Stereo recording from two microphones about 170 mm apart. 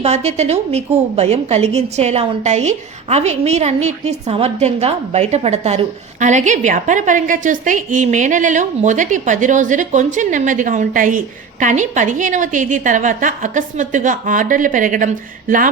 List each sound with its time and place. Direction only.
0.0 s a woman's voice: 40° right (ahead or behind)